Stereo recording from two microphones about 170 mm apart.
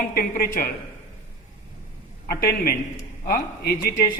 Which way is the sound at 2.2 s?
65° left (ahead or behind).